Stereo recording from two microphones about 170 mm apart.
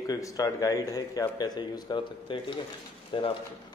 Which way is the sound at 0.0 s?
20° left (ahead or behind).